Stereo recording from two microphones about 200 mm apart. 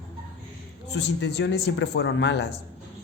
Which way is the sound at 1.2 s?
60° left (ahead or behind).